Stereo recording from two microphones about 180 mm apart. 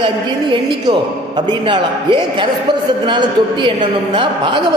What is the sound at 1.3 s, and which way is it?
A man's voice, 25° right (ahead or behind).